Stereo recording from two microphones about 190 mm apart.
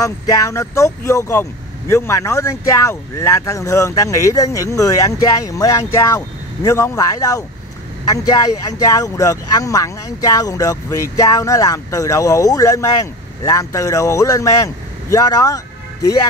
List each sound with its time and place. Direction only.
0.0 s speech: 15° left (ahead or behind)